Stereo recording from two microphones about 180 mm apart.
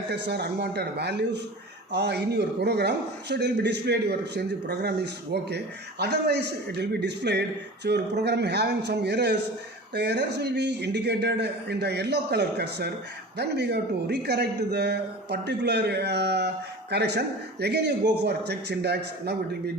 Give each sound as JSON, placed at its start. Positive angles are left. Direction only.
{"t": 0.1, "sound": "a man's voice", "side_deg": -65}